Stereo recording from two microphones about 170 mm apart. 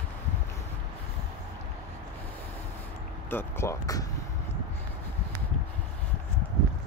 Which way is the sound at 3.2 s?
15° left (ahead or behind).